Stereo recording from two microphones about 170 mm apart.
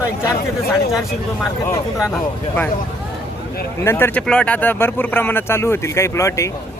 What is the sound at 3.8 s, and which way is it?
Speech, 15° left (ahead or behind).